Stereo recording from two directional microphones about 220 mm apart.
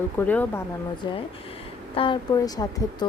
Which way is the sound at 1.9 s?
20° left (ahead or behind).